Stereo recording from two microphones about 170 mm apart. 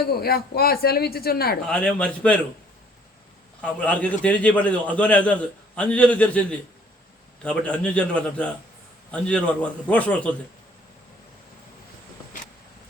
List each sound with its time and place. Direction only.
0.0 s speech: 65° left (ahead or behind)
1.6 s a man's voice: 5° left (ahead or behind)
3.6 s a man's voice: 10° left (ahead or behind)